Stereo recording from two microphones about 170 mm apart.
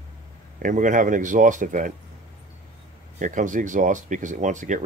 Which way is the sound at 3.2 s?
50° right (ahead or behind).